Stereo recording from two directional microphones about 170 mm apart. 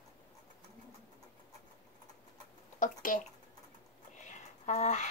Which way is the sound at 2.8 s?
50° left (ahead or behind).